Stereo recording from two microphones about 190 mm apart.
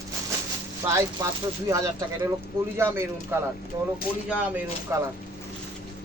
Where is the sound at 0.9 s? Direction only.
15° right (ahead or behind).